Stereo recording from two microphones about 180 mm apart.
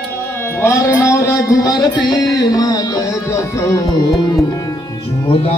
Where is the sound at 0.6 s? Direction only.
15° left (ahead or behind).